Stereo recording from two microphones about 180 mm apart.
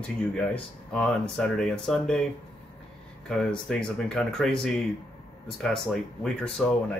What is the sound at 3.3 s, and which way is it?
Speech, 5° left (ahead or behind).